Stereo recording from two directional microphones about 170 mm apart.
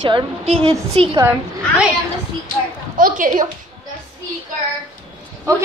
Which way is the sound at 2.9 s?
55° right (ahead or behind).